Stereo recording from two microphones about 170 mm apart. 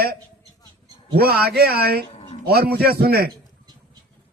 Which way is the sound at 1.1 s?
65° right (ahead or behind).